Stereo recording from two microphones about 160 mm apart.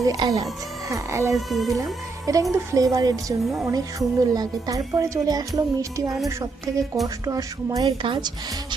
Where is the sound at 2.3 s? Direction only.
20° right (ahead or behind).